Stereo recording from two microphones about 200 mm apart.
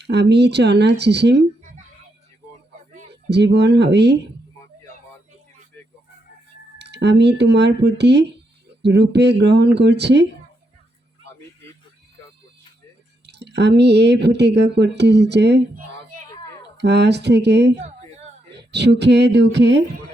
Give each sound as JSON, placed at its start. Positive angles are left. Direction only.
{"t": 0.0, "sound": "speech", "side_deg": -55}
{"t": 3.2, "sound": "speech", "side_deg": -60}
{"t": 6.7, "sound": "speech", "side_deg": -60}
{"t": 13.2, "sound": "speech", "side_deg": -60}